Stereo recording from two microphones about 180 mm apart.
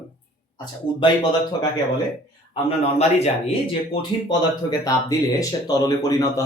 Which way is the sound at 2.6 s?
35° left (ahead or behind).